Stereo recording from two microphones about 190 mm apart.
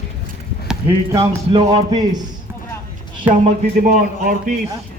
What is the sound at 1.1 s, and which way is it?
A man's voice, 20° right (ahead or behind).